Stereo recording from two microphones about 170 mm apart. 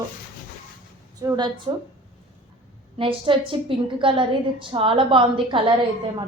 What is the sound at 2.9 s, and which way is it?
A woman's voice, 30° right (ahead or behind).